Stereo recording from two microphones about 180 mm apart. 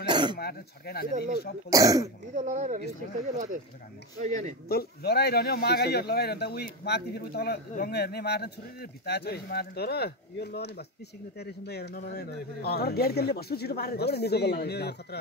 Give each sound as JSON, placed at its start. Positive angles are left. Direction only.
{"t": 0.0, "sound": "a sound", "side_deg": -25}
{"t": 0.4, "sound": "speech", "side_deg": 60}
{"t": 1.7, "sound": "speech", "side_deg": -20}
{"t": 2.3, "sound": "speech", "side_deg": -40}
{"t": 4.2, "sound": "speech", "side_deg": -40}
{"t": 4.6, "sound": "speech", "side_deg": 60}